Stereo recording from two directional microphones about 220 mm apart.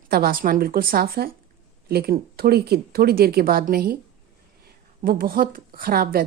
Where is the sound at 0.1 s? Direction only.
40° right (ahead or behind).